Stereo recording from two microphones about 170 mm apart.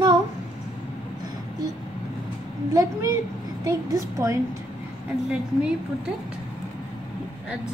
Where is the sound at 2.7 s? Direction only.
20° right (ahead or behind).